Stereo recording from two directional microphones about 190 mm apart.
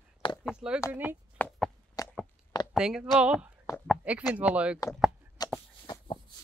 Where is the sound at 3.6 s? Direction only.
10° left (ahead or behind).